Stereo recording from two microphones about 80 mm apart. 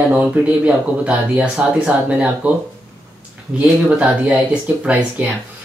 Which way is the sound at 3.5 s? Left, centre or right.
Centre.